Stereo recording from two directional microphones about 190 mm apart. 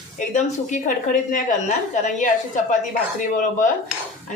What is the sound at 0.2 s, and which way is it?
A man's voice, 40° left (ahead or behind).